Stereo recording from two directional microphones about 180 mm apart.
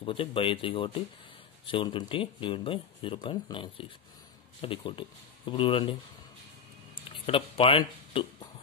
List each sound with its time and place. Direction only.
0.0 s speech: 30° left (ahead or behind)
7.1 s speech: 30° left (ahead or behind)